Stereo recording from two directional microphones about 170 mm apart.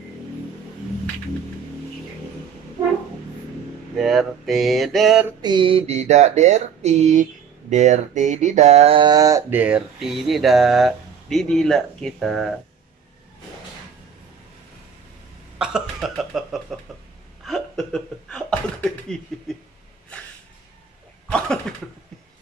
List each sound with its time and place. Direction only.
3.9 s speech: centre (ahead or behind)
5.4 s a sound: 30° right (ahead or behind)
9.5 s speech: 10° right (ahead or behind)
15.6 s speech: centre (ahead or behind)
21.3 s cough: 5° left (ahead or behind)